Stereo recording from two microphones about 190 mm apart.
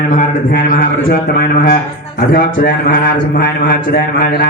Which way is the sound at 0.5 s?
50° left (ahead or behind).